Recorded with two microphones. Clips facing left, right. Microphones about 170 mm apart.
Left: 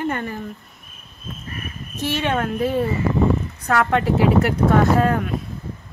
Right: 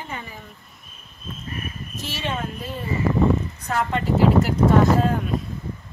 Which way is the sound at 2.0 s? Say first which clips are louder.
Left 7 dB; 60° left (ahead or behind).